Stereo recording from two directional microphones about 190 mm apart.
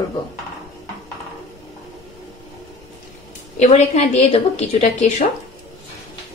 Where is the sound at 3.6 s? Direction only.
35° left (ahead or behind).